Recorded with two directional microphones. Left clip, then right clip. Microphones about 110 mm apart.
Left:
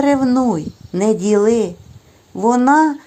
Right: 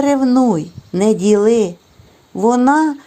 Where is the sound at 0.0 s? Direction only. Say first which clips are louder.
Right 1 dB; 40° right (ahead or behind).